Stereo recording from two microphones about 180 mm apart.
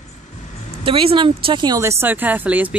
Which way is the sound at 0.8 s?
30° right (ahead or behind).